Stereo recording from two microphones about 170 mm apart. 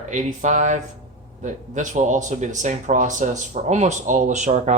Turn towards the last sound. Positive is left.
turn(degrees=-45)  # may be behind; listen again after turning